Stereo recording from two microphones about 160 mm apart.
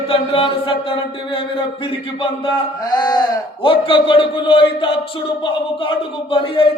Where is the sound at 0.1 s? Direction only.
35° left (ahead or behind).